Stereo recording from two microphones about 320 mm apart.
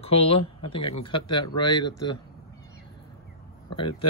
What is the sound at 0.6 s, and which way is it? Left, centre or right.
Speech, left.